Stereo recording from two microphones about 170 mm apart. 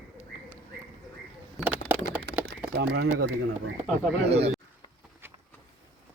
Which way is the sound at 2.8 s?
80° right.